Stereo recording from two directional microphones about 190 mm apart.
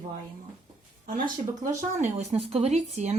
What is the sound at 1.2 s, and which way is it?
Speech, 45° right (ahead or behind).